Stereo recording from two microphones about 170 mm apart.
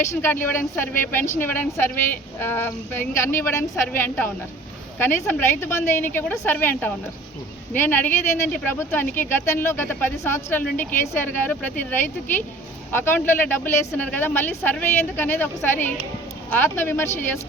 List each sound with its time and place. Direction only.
0.1 s speech: 15° left (ahead or behind)
4.9 s speech: 10° left (ahead or behind)